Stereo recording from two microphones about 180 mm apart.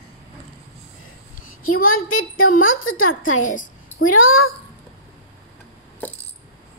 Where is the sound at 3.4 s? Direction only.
45° left (ahead or behind).